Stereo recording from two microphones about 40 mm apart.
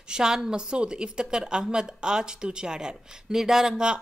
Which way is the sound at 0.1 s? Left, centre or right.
Centre.